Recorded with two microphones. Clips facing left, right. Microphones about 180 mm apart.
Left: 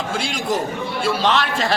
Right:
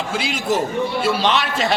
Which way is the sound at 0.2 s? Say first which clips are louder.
Right 3 dB; 5° right (ahead or behind).